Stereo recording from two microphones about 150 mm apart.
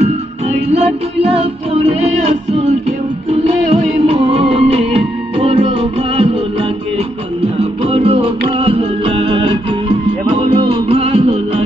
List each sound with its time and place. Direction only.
0.7 s music: 40° right (ahead or behind)
3.4 s music: 40° right (ahead or behind)
7.8 s music: 40° right (ahead or behind)